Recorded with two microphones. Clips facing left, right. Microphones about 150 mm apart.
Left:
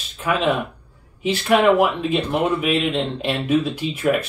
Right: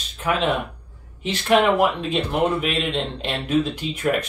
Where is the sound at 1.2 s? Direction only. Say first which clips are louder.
Left 1 dB; 10° left (ahead or behind).